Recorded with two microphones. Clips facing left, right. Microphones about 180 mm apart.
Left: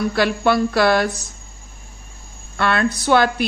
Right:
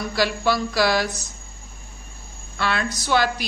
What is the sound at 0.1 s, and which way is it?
Speech, 55° left (ahead or behind).